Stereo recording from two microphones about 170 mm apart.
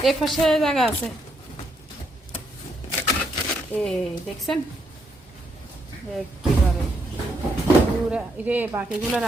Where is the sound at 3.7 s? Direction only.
5° left (ahead or behind).